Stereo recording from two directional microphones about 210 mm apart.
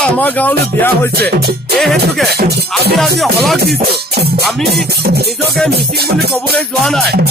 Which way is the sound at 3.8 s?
50° right (ahead or behind).